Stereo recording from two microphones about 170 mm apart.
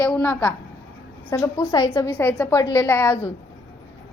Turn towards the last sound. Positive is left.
turn(degrees=15)  # may be behind; listen again after turning